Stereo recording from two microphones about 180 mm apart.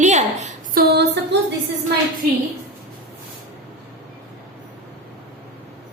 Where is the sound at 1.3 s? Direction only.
70° right (ahead or behind).